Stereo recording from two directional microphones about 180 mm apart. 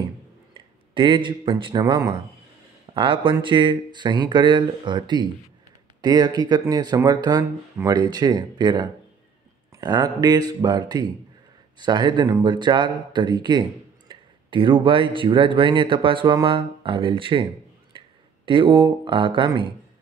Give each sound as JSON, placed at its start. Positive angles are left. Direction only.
{"t": 0.9, "sound": "speech", "side_deg": -25}